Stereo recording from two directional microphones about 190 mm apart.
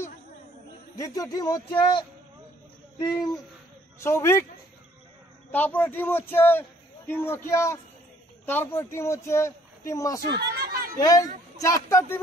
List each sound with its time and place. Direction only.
0.9 s speech: 15° left (ahead or behind)
4.0 s a man's voice: 15° left (ahead or behind)
5.5 s a man's voice: 10° left (ahead or behind)
10.3 s chatter: 55° right (ahead or behind)
11.0 s a man's voice: 20° left (ahead or behind)